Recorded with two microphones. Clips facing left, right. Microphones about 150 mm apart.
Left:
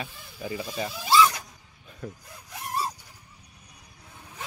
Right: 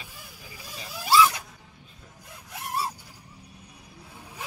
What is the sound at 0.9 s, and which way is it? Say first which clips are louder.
Zipper: even; 5° right (ahead or behind).